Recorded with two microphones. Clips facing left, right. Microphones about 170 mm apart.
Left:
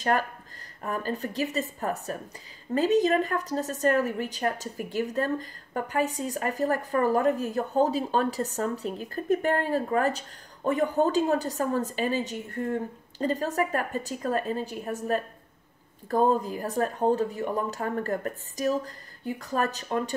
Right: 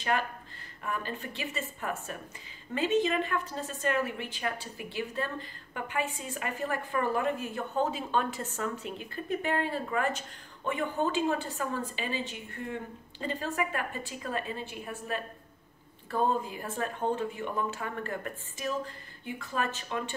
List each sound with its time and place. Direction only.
0.0 s a woman's voice: 40° left (ahead or behind)